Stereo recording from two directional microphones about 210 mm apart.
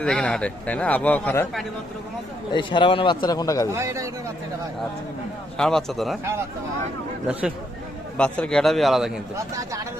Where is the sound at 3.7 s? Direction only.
15° right (ahead or behind).